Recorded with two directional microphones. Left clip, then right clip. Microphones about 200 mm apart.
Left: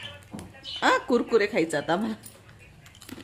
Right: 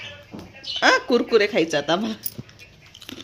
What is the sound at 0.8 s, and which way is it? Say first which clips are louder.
Speech: right 5 dB; 5° left (ahead or behind).